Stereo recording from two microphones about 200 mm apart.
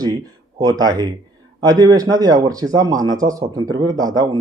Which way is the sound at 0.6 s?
20° right (ahead or behind).